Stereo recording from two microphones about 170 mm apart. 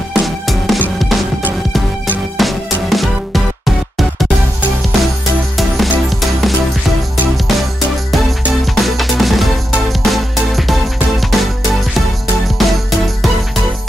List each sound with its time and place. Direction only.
0.1 s music: centre (ahead or behind)
2.3 s music: centre (ahead or behind)
5.6 s music: centre (ahead or behind)
8.7 s music: centre (ahead or behind)
12.5 s music: centre (ahead or behind)